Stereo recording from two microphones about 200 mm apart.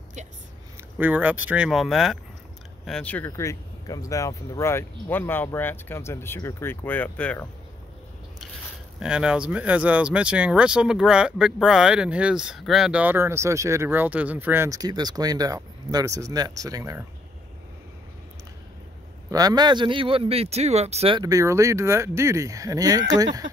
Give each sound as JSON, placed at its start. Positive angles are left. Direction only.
{"t": 0.9, "sound": "speech", "side_deg": -10}
{"t": 9.0, "sound": "speech", "side_deg": -5}
{"t": 19.3, "sound": "speech", "side_deg": -20}
{"t": 21.2, "sound": "speech", "side_deg": -15}